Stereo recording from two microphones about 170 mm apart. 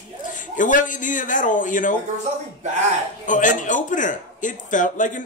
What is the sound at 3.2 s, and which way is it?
A man's voice, 50° left (ahead or behind).